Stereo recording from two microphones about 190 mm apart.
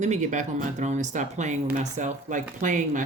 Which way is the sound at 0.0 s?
40° right (ahead or behind).